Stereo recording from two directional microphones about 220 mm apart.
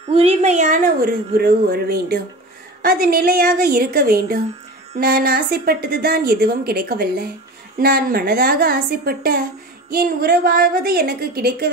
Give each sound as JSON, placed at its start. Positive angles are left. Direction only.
{"t": 0.0, "sound": "a woman's voice", "side_deg": -30}